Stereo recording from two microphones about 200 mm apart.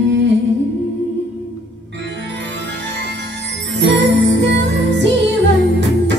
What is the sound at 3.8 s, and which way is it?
Music, 60° right (ahead or behind).